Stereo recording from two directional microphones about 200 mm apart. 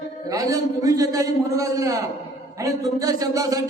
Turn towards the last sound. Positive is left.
turn(degrees=-15)  # may be behind; listen again after turning